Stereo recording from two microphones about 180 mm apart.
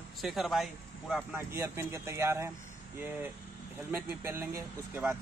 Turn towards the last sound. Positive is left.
turn(degrees=-10)  # may be behind; listen again after turning